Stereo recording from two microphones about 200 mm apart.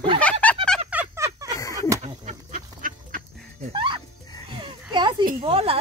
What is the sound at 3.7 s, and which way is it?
Speech, 25° right (ahead or behind).